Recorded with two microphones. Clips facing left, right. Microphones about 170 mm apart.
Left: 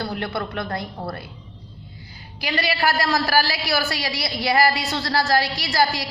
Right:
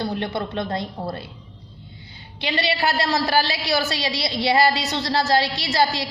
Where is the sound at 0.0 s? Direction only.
20° right (ahead or behind).